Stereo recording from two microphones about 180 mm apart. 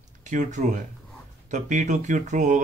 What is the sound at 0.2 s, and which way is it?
Speech, 45° right (ahead or behind).